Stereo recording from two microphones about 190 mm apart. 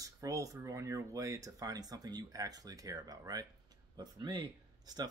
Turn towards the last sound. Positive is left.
turn(degrees=-20)  # may be behind; listen again after turning